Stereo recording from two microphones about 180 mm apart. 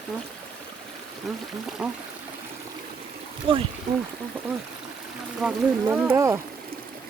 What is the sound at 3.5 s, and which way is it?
Speech, 30° right (ahead or behind).